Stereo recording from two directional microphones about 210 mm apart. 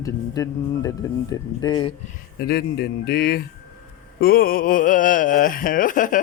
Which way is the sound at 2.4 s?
50° left (ahead or behind).